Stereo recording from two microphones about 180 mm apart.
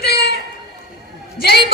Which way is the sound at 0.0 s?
65° left (ahead or behind).